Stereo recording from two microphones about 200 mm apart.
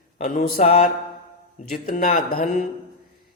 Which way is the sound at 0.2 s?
45° left (ahead or behind).